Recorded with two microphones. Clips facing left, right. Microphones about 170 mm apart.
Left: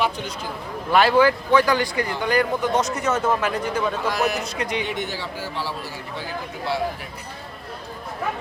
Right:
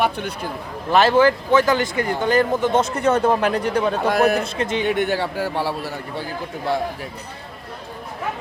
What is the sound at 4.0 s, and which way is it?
A man's voice, 55° right (ahead or behind).